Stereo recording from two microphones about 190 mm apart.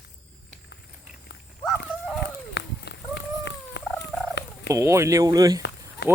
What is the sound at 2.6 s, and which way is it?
Run, 65° left (ahead or behind).